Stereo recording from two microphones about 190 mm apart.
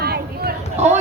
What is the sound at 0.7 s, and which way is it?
Speech, 35° right (ahead or behind).